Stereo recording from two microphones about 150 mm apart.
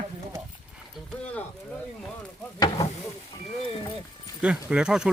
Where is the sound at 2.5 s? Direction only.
25° left (ahead or behind).